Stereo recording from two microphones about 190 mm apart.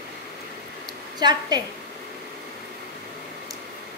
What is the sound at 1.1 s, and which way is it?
Speech, 20° right (ahead or behind).